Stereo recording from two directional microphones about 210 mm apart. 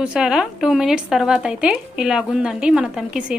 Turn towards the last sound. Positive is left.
turn(degrees=-5)  # may be behind; listen again after turning